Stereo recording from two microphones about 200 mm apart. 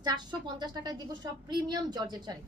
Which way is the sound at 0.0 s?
20° right (ahead or behind).